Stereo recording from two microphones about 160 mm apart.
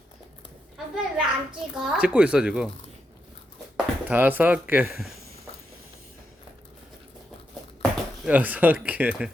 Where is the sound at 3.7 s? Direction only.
10° right (ahead or behind).